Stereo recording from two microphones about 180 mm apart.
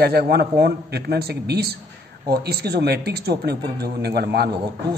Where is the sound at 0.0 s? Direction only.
60° right (ahead or behind).